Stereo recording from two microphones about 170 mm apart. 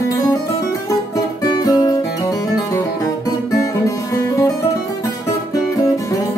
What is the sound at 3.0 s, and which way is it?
Music, 20° left (ahead or behind).